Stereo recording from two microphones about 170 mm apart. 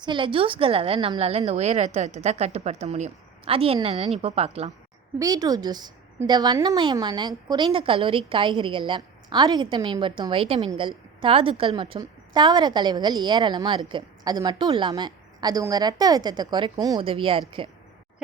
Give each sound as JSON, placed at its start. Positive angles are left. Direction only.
{"t": 0.0, "sound": "a woman's voice", "side_deg": -30}
{"t": 5.2, "sound": "a woman's voice", "side_deg": -20}